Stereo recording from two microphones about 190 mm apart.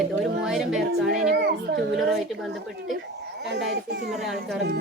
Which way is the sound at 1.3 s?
60° right (ahead or behind).